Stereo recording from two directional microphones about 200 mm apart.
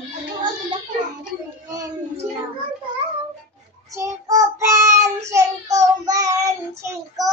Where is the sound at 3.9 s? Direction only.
15° right (ahead or behind).